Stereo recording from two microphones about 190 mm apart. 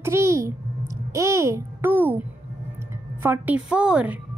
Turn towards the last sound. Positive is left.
turn(degrees=-5)  # may be behind; listen again after turning